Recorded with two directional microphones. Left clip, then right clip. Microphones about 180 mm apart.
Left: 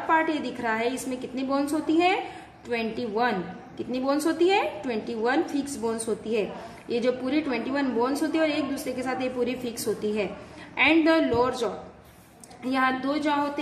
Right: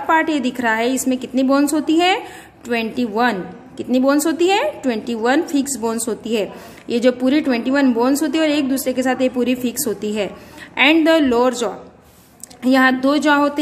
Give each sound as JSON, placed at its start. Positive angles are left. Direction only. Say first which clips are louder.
{"t": 0.1, "sound": "a woman's voice", "louder": "right 7 dB", "side_deg": -55}